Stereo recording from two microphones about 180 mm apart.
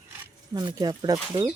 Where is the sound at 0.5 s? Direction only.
20° right (ahead or behind).